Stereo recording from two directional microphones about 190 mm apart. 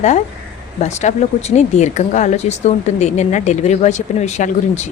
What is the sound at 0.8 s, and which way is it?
A woman's voice, 35° left (ahead or behind).